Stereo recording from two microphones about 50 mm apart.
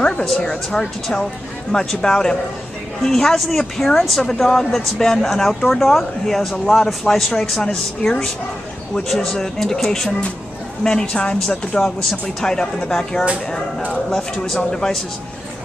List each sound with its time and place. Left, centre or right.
0.0 s a sound: centre
0.7 s speech: centre
12.0 s speech: centre
12.4 s speech: centre